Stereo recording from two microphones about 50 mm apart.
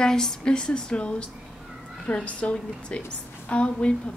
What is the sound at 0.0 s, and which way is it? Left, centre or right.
Speech, centre.